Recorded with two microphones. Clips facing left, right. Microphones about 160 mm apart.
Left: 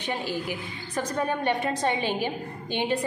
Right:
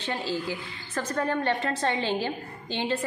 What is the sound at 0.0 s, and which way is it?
A woman's voice, 15° left (ahead or behind).